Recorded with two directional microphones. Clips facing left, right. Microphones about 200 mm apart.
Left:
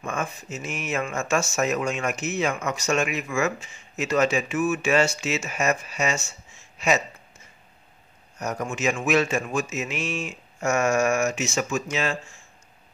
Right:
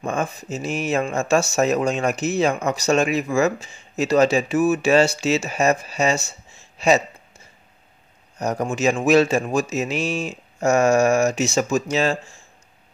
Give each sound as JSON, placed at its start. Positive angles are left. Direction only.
{"t": 0.0, "sound": "speech", "side_deg": -35}